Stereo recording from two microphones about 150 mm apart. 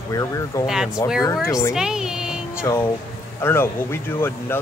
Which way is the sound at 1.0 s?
20° left (ahead or behind).